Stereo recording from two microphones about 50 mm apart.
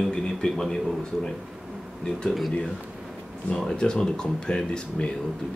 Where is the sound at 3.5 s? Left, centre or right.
Centre.